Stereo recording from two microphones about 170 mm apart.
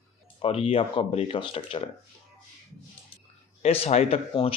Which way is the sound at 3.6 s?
35° left (ahead or behind).